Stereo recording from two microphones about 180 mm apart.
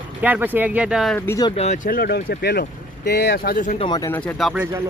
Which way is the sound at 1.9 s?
60° left (ahead or behind).